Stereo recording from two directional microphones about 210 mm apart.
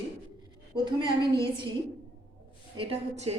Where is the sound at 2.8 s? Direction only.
30° right (ahead or behind).